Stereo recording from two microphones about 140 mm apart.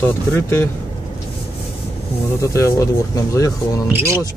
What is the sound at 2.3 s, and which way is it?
Speech, 20° left (ahead or behind).